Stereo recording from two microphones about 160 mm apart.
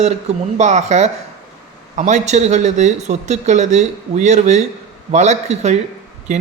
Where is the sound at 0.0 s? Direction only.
45° right (ahead or behind).